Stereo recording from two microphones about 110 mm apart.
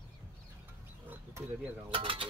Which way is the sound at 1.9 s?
50° right (ahead or behind).